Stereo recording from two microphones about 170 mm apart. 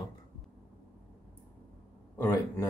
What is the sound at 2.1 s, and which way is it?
Speech, 15° left (ahead or behind).